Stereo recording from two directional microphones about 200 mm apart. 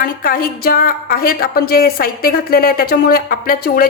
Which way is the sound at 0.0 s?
45° left (ahead or behind).